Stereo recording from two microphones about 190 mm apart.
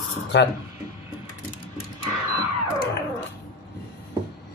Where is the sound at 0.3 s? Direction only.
70° left (ahead or behind).